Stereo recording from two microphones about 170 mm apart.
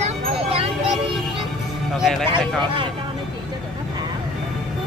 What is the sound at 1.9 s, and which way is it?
Speech, centre (ahead or behind).